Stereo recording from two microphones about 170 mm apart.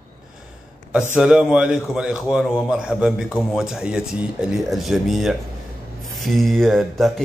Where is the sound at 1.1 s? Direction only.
5° right (ahead or behind).